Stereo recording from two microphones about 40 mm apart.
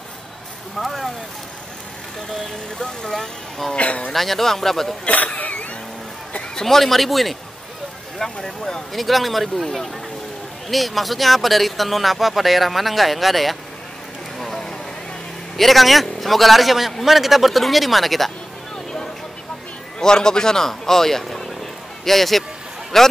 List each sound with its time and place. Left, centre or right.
0.7 s speech: centre
2.2 s speech: centre
3.7 s speech: left
4.1 s speech: centre
5.0 s speech: left
6.6 s speech: centre
8.2 s speech: centre
8.9 s speech: centre
10.7 s speech: centre
14.4 s a sound: centre
15.5 s speech: centre
20.0 s speech: centre